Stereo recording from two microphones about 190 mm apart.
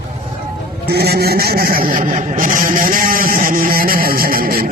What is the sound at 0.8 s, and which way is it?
Vehicle, 55° right (ahead or behind).